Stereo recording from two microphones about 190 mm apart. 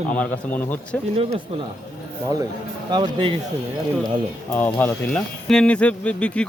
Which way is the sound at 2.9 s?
25° right (ahead or behind).